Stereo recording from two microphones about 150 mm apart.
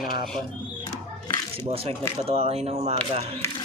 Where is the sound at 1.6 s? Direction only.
40° right (ahead or behind).